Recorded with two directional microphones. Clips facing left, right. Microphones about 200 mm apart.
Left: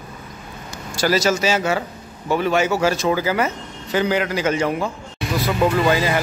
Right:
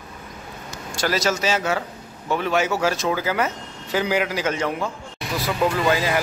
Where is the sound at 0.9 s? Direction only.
Centre (ahead or behind).